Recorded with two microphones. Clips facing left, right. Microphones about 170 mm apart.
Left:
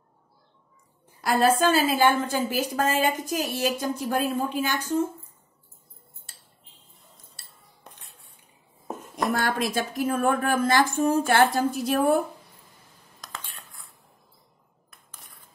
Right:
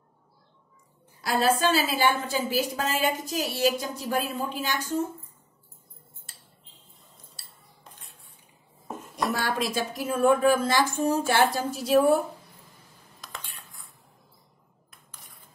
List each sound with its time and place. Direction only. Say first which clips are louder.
1.2 s a woman's voice: left 3 dB; 50° left (ahead or behind)
9.1 s a woman's voice: left 2 dB; 50° left (ahead or behind)